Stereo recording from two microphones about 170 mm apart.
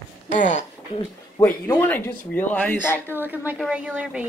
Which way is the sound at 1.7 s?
10° left (ahead or behind).